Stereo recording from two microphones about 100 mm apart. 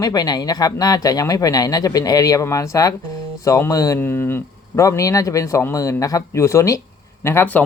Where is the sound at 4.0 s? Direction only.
20° left (ahead or behind).